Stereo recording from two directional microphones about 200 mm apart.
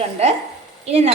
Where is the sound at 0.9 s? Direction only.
30° right (ahead or behind).